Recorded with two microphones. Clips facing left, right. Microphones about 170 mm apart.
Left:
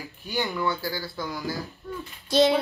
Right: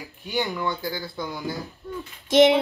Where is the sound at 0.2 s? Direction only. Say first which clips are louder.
Right 1 dB; 15° right (ahead or behind).